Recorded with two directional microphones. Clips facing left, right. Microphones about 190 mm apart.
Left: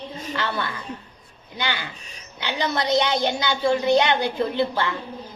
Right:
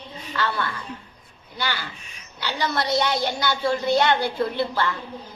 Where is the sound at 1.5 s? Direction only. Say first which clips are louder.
Left 1 dB; 15° left (ahead or behind).